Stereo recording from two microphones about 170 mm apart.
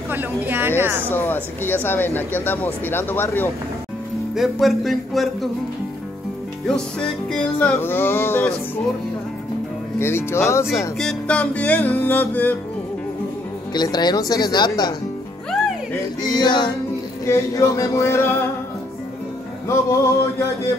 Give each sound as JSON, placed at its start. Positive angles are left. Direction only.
{"t": 0.1, "sound": "a woman's voice", "side_deg": -10}
{"t": 1.1, "sound": "speech", "side_deg": 10}
{"t": 4.4, "sound": "a sound", "side_deg": 0}
{"t": 6.7, "sound": "speech", "side_deg": 5}
{"t": 9.9, "sound": "speech", "side_deg": 15}
{"t": 11.0, "sound": "speech", "side_deg": 5}
{"t": 13.7, "sound": "speech", "side_deg": 25}
{"t": 15.5, "sound": "music", "side_deg": 0}
{"t": 16.2, "sound": "speech", "side_deg": 25}
{"t": 19.7, "sound": "speech", "side_deg": 15}